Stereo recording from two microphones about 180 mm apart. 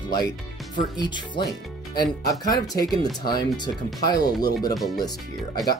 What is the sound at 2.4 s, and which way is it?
Speech, 20° left (ahead or behind).